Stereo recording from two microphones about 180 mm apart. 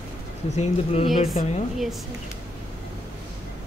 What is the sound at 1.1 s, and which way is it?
Speech, 45° left (ahead or behind).